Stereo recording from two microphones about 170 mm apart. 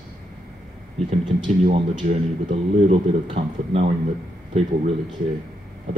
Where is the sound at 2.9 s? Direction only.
40° right (ahead or behind).